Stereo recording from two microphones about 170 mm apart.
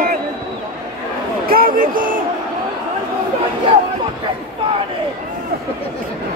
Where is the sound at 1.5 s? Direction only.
55° right (ahead or behind).